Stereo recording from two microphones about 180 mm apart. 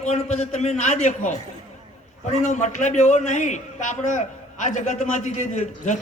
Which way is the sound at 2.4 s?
40° left (ahead or behind).